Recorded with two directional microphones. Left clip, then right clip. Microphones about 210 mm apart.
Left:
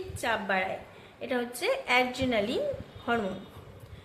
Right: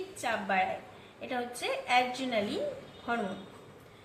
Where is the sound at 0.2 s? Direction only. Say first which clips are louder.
Left 1 dB; 50° left (ahead or behind).